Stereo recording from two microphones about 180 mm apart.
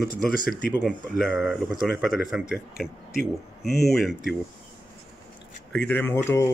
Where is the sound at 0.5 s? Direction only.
65° left (ahead or behind).